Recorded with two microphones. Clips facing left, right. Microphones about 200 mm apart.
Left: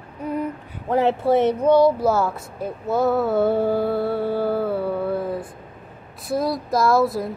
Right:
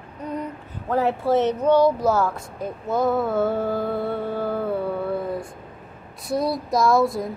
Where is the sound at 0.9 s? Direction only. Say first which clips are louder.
Left 2 dB; 15° left (ahead or behind).